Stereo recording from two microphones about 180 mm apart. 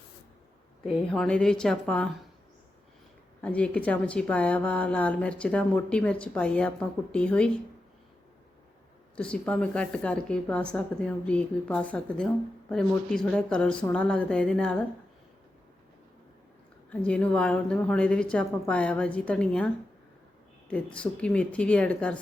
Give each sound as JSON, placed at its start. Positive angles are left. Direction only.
{"t": 0.9, "sound": "a woman's voice", "side_deg": 0}
{"t": 3.4, "sound": "speech", "side_deg": 5}
{"t": 9.1, "sound": "a woman's voice", "side_deg": 5}
{"t": 16.9, "sound": "speech", "side_deg": 5}